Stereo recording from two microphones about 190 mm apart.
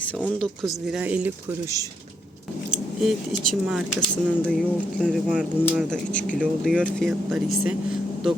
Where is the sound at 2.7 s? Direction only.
Centre (ahead or behind).